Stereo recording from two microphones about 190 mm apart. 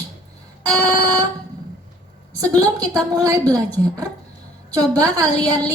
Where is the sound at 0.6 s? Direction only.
5° left (ahead or behind).